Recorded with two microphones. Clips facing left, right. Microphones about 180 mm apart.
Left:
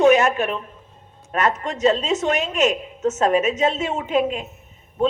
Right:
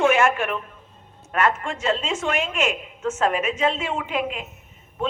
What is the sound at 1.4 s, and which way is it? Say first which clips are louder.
A woman's voice: left 4 dB; 40° left (ahead or behind).